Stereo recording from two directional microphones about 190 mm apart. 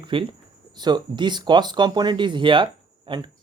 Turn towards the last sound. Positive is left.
turn(degrees=-25)  # may be behind; listen again after turning